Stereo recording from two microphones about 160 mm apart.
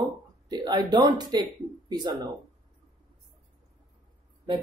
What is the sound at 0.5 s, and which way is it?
Speech, 25° right (ahead or behind).